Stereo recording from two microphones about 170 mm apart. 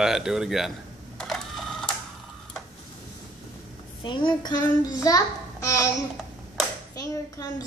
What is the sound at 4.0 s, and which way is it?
A child's voice, 30° left (ahead or behind).